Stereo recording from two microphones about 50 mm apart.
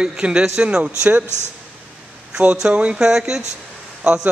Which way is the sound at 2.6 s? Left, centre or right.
Right.